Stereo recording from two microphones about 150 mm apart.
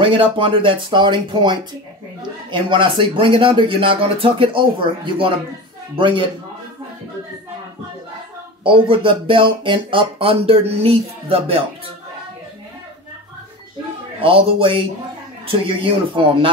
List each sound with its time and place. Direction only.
0.0 s speech: 35° right (ahead or behind)
8.6 s speech: 35° right (ahead or behind)
14.2 s speech: 35° right (ahead or behind)